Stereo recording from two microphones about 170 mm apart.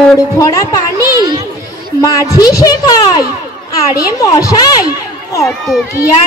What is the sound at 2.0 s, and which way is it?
A woman's voice, 20° left (ahead or behind).